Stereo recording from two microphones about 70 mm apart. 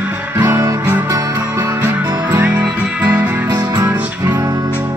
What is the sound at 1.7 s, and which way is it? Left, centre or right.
Music, right.